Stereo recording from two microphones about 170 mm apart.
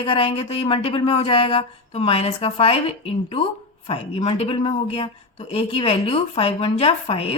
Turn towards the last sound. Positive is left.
turn(degrees=35)  # may be behind; listen again after turning